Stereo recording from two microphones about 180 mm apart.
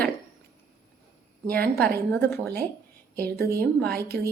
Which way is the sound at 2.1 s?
10° left (ahead or behind).